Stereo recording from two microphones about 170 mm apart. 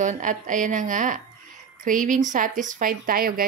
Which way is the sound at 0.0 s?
50° right (ahead or behind).